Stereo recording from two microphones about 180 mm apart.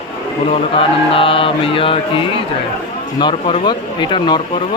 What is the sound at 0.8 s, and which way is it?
Speech, 30° left (ahead or behind).